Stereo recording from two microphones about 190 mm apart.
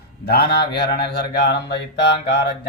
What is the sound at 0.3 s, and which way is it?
Speech, 60° left (ahead or behind).